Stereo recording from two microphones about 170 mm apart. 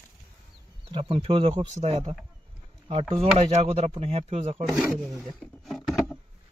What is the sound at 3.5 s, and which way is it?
Speech, 40° right (ahead or behind).